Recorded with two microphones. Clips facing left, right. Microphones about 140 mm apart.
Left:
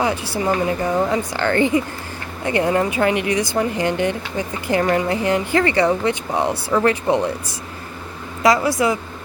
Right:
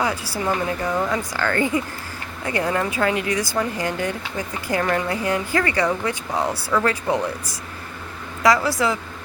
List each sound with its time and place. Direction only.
0.0 s speech: 25° left (ahead or behind)